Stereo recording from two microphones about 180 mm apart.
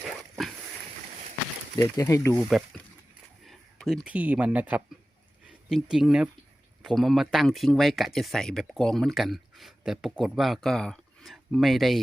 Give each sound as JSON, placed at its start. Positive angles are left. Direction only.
{"t": 1.8, "sound": "speech", "side_deg": 20}
{"t": 3.4, "sound": "speech", "side_deg": 0}